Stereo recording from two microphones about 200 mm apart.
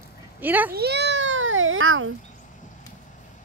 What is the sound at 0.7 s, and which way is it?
Speech, 55° right (ahead or behind).